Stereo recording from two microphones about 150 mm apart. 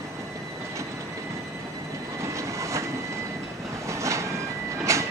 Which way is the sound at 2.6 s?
20° right (ahead or behind).